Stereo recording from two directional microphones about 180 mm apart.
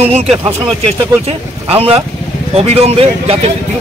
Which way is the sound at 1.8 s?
35° right (ahead or behind).